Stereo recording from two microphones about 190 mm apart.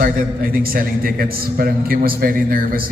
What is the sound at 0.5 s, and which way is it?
Music, 50° right (ahead or behind).